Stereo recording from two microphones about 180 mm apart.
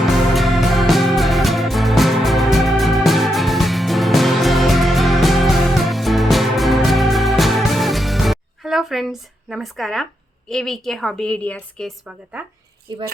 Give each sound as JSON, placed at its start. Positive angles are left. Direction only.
{"t": 0.0, "sound": "music", "side_deg": 0}
{"t": 10.5, "sound": "a woman's voice", "side_deg": 0}
{"t": 12.9, "sound": "speech", "side_deg": -25}